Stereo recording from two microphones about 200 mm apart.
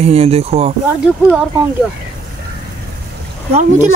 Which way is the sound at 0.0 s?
30° right (ahead or behind).